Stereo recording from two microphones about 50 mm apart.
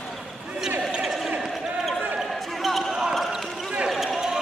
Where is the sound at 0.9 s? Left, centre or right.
Centre.